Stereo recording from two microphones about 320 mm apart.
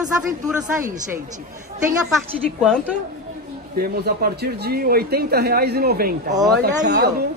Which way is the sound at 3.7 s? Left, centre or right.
Right.